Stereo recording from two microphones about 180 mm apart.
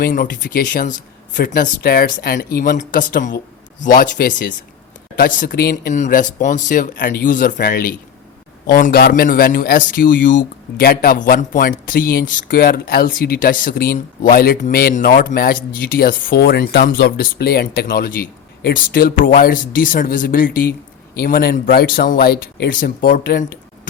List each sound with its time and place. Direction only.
0.1 s speech: 50° left (ahead or behind)
5.9 s speech: 45° left (ahead or behind)